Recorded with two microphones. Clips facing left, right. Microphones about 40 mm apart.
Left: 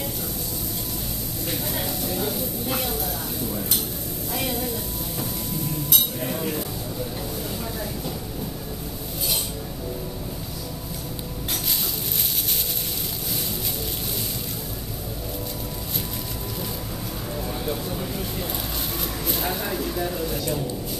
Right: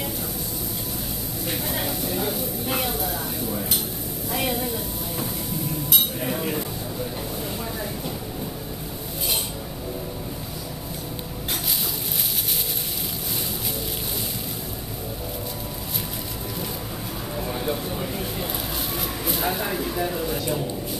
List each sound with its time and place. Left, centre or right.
1.5 s a woman's voice: centre
5.9 s speech: centre
17.5 s a sound: centre